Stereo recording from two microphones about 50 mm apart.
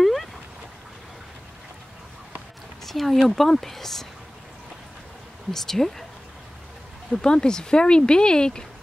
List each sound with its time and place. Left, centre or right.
0.0 s a sound: centre
2.8 s speech: centre
5.5 s speech: centre
7.2 s speech: centre